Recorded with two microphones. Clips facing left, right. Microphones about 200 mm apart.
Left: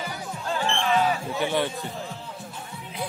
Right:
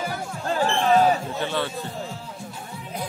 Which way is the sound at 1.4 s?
15° left (ahead or behind).